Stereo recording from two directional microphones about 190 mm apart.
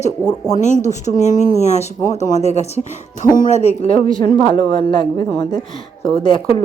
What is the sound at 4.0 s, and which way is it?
Speech, 45° right (ahead or behind).